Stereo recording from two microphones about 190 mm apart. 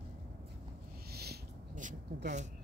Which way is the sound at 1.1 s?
55° right (ahead or behind).